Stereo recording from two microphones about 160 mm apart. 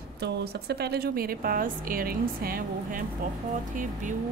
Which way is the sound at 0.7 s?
85° right.